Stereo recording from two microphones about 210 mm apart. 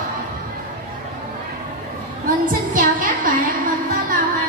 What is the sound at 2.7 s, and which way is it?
Music, 40° right (ahead or behind).